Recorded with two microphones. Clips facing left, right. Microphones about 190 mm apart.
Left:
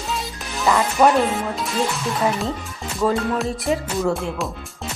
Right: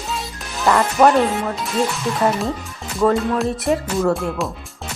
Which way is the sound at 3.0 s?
Centre (ahead or behind).